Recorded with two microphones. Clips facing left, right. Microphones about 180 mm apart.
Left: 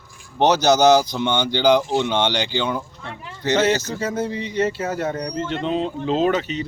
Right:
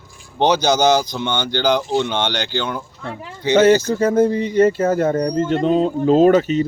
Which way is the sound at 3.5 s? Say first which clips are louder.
Right 7 dB; 55° right (ahead or behind).